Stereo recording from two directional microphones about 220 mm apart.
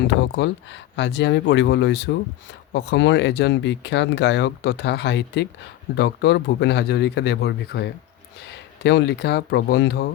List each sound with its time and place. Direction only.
0.1 s speech: 55° left (ahead or behind)